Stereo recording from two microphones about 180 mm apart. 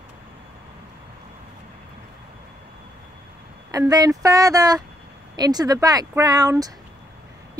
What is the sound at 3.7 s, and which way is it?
Speech, 20° right (ahead or behind).